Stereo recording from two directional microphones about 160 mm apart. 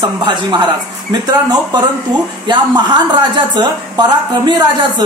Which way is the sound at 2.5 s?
25° right (ahead or behind).